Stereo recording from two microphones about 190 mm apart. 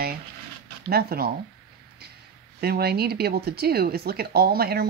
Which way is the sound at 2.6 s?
55° right (ahead or behind).